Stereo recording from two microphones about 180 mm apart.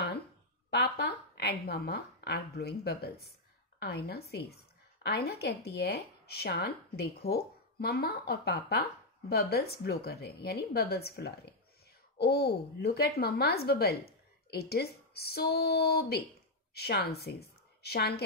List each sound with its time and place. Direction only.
0.7 s a woman's voice: 65° left (ahead or behind)